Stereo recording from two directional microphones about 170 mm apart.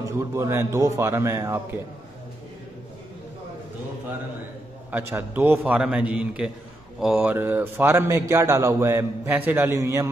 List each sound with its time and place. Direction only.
0.2 s a man's voice: 15° right (ahead or behind)
4.9 s a man's voice: 10° right (ahead or behind)